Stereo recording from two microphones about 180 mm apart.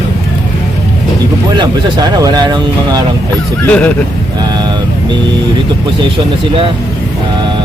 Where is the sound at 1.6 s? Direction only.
20° right (ahead or behind).